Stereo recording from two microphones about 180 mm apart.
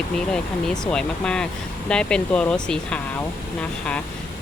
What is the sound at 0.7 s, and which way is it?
Speech, 5° left (ahead or behind).